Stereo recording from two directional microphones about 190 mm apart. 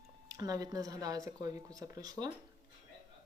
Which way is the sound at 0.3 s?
20° right (ahead or behind).